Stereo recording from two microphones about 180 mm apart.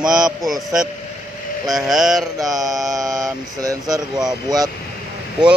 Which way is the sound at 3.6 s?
20° right (ahead or behind).